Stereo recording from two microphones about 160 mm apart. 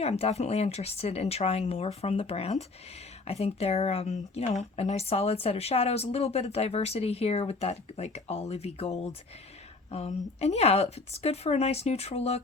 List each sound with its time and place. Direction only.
0.0 s speech: 40° left (ahead or behind)